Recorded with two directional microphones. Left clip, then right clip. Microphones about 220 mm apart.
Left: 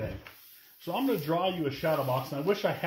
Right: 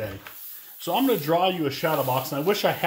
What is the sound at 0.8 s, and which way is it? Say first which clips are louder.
Speech: right 7 dB; 45° right (ahead or behind).